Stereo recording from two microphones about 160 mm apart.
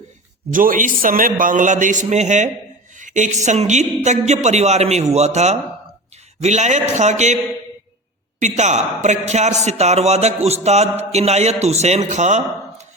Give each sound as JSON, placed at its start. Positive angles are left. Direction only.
{"t": 0.5, "sound": "a woman's voice", "side_deg": -60}
{"t": 8.4, "sound": "a woman's voice", "side_deg": -45}